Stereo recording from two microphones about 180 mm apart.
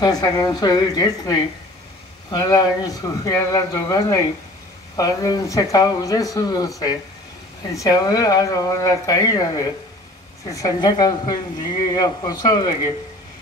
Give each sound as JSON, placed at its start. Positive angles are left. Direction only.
{"t": 0.0, "sound": "speech", "side_deg": 20}
{"t": 7.7, "sound": "speech", "side_deg": 20}